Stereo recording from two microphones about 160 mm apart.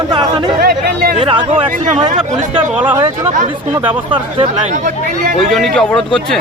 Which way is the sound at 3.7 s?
30° right (ahead or behind).